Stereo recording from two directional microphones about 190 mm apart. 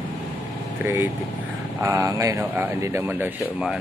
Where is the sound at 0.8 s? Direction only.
10° right (ahead or behind).